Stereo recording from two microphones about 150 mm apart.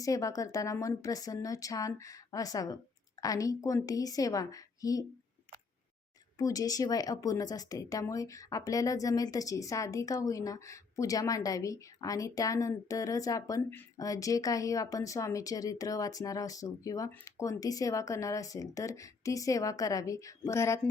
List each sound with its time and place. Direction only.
0.0 s speech: 20° left (ahead or behind)
6.4 s speech: 25° left (ahead or behind)